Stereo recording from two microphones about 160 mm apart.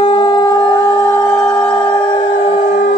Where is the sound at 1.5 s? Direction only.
5° left (ahead or behind).